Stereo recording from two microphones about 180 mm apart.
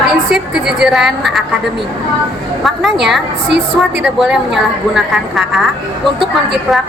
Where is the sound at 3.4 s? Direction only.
70° right (ahead or behind).